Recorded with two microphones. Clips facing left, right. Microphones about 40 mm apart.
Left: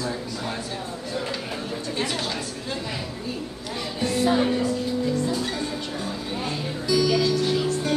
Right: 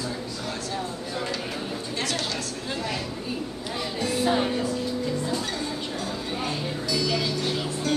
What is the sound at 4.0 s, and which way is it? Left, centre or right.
Music, centre.